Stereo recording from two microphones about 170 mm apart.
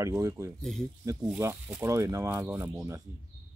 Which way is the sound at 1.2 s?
10° right (ahead or behind).